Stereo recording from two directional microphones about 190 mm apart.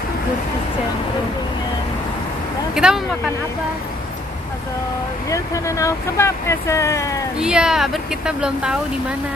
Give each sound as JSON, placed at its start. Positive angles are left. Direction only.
{"t": 2.7, "sound": "speech", "side_deg": -5}
{"t": 5.3, "sound": "speech", "side_deg": 15}
{"t": 7.3, "sound": "speech", "side_deg": -5}